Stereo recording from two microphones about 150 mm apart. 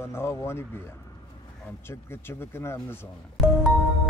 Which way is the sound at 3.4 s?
Centre (ahead or behind).